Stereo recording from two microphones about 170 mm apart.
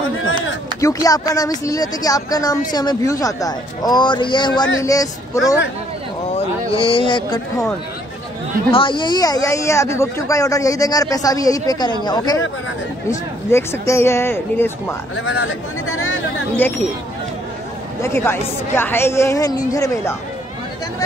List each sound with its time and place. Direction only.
0.7 s speech: 20° left (ahead or behind)
6.3 s speech: 30° left (ahead or behind)
8.7 s speech: 30° left (ahead or behind)
13.5 s speech: 15° left (ahead or behind)
16.5 s speech: 10° left (ahead or behind)
18.0 s speech: 15° left (ahead or behind)